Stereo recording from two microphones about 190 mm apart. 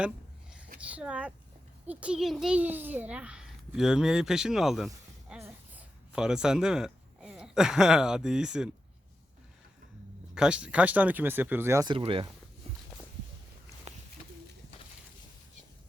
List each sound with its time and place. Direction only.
0.9 s a child's voice: 5° right (ahead or behind)
5.3 s a sound: 5° right (ahead or behind)
10.3 s speech: 5° right (ahead or behind); by 12.3 s 30° right (ahead or behind)